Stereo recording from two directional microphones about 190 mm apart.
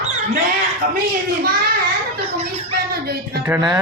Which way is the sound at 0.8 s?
45° right (ahead or behind).